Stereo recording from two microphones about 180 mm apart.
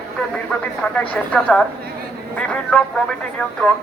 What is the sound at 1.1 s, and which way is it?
Speech, 5° left (ahead or behind).